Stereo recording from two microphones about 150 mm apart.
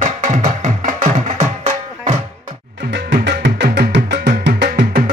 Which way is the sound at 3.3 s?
90° right.